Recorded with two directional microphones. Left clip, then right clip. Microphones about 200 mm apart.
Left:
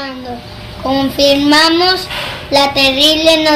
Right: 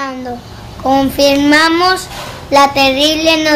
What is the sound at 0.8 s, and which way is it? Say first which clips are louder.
Child singing: right 1 dB; 15° right (ahead or behind).